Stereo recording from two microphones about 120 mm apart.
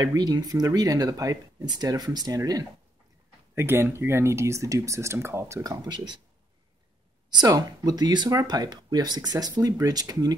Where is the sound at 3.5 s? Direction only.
20° right (ahead or behind); by 6.1 s 35° right (ahead or behind).